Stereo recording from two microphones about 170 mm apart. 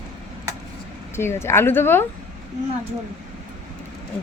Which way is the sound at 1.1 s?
15° left (ahead or behind).